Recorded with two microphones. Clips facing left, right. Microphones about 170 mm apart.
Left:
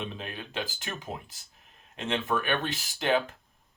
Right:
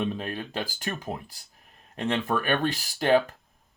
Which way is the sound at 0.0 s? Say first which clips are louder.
Right 7 dB; 40° right (ahead or behind).